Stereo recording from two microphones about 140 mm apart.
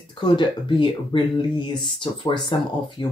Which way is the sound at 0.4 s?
35° left (ahead or behind).